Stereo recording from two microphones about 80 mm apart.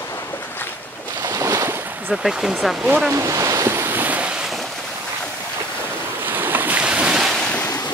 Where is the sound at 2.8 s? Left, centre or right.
Centre.